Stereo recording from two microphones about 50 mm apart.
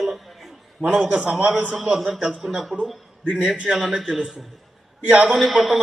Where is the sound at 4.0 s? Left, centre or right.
Centre.